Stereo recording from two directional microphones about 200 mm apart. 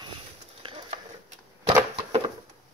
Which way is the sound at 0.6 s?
25° right (ahead or behind).